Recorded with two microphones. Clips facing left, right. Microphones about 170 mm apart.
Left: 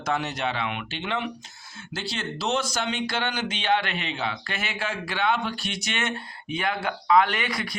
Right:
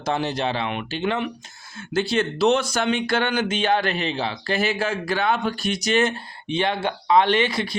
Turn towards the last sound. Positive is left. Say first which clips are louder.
# right 9 dB
turn(degrees=-25)  # may be behind; listen again after turning